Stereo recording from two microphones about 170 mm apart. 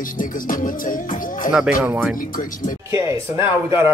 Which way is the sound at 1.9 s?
10° right (ahead or behind).